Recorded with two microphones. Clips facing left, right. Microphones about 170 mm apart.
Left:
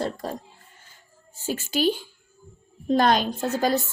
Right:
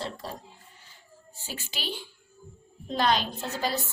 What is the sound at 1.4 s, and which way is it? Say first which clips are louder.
A woman's voice: left 14 dB; 45° left (ahead or behind).